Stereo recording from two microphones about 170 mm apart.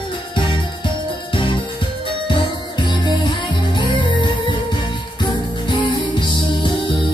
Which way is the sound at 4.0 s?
25° left (ahead or behind).